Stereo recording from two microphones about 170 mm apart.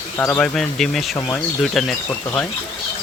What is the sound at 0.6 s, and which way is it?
Speech, centre (ahead or behind).